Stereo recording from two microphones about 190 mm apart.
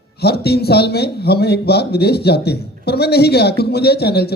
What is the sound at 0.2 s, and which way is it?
Speech, 60° left (ahead or behind).